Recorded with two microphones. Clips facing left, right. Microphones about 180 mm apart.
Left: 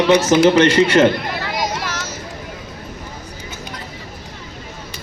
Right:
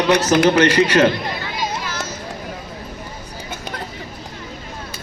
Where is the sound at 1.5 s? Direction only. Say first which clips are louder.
Left 2 dB; 90° left.